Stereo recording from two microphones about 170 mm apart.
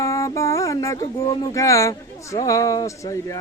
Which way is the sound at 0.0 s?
20° left (ahead or behind).